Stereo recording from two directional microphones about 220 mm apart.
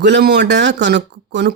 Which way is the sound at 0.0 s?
50° right (ahead or behind).